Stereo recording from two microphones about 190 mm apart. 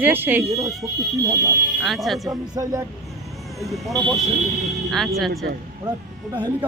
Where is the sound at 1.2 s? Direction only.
15° right (ahead or behind).